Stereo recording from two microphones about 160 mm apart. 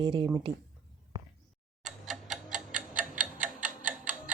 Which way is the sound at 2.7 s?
55° right (ahead or behind).